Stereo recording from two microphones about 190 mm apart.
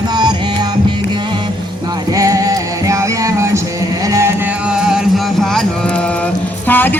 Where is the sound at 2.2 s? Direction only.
15° right (ahead or behind).